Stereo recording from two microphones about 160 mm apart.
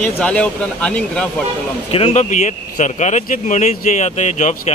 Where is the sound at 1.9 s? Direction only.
35° left (ahead or behind).